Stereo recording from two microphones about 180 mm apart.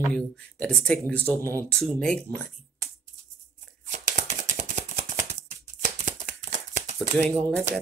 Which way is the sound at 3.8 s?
40° right (ahead or behind).